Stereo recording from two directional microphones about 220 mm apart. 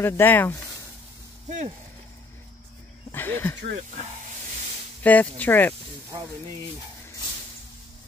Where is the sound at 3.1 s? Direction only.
10° left (ahead or behind).